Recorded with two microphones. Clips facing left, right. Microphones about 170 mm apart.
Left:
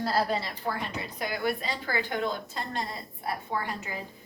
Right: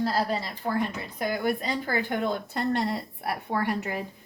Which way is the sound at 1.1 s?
45° right (ahead or behind).